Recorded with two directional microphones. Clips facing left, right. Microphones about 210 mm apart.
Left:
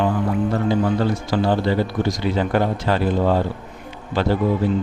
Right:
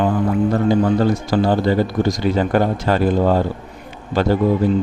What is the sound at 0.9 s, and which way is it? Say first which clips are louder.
Speech: right 4 dB; 45° right (ahead or behind).